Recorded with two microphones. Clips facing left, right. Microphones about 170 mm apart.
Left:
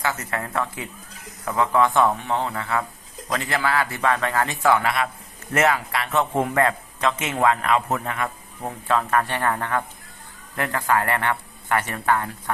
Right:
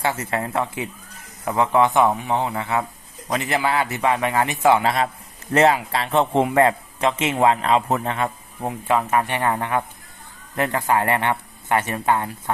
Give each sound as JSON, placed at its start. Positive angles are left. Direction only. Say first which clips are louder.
{"t": 0.0, "sound": "a man's voice", "louder": "right 3 dB", "side_deg": -25}
{"t": 8.6, "sound": "a man's voice", "louder": "right 2 dB", "side_deg": -15}